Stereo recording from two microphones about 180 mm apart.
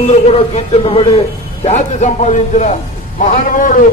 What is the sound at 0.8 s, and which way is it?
A man's voice, 30° left (ahead or behind).